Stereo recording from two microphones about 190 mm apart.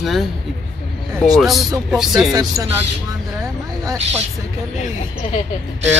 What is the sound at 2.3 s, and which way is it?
Speech, 20° right (ahead or behind).